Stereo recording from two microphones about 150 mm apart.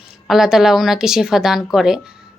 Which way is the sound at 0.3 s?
5° right (ahead or behind).